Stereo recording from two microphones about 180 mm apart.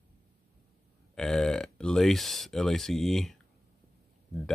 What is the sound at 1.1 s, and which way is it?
Speech, 5° left (ahead or behind).